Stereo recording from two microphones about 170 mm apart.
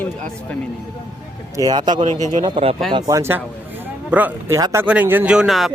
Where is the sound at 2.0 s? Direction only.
40° right (ahead or behind).